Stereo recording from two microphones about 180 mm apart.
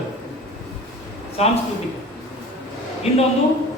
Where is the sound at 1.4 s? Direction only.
35° left (ahead or behind).